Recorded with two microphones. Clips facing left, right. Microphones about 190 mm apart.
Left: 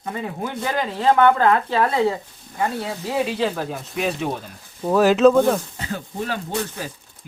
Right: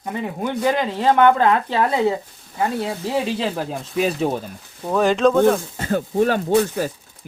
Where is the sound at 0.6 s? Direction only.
25° right (ahead or behind).